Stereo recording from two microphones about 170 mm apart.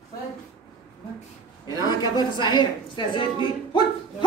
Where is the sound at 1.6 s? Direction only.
25° left (ahead or behind).